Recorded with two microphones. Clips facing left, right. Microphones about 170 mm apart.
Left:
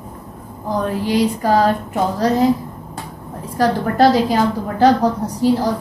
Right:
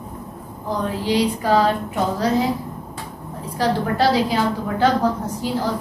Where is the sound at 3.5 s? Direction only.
45° left (ahead or behind).